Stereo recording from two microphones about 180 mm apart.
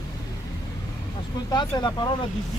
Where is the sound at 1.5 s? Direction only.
25° left (ahead or behind).